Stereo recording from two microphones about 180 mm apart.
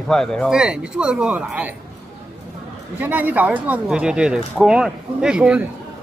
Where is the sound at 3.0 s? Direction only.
10° right (ahead or behind).